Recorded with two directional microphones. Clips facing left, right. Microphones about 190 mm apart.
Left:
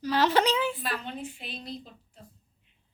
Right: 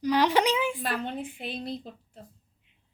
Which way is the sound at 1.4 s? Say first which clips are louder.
Right 6 dB; 55° right (ahead or behind).